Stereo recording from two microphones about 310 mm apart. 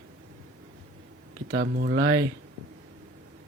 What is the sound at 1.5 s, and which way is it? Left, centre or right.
Speech, right.